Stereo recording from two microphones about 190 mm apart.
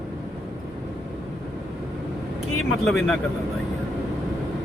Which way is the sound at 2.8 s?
5° left (ahead or behind).